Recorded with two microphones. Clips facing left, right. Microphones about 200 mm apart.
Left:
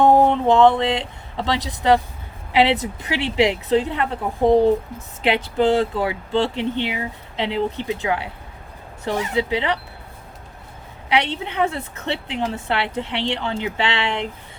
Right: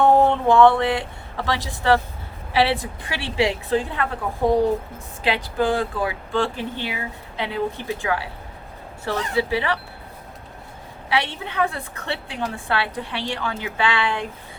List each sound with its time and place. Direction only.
0.0 s a woman's voice: 15° left (ahead or behind)
11.1 s a woman's voice: 20° left (ahead or behind)